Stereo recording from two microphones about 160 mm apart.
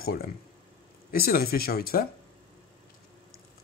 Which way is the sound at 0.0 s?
70° left (ahead or behind).